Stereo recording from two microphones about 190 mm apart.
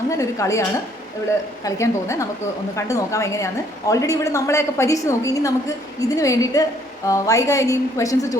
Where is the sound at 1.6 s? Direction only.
15° left (ahead or behind).